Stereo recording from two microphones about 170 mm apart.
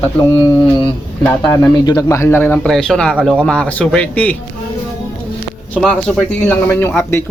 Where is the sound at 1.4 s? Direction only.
20° left (ahead or behind).